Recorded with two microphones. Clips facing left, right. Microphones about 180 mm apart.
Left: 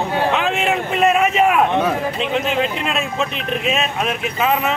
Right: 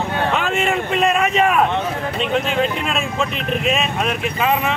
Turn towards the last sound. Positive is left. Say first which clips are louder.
# even
turn(degrees=0)  # may be behind; listen again after turning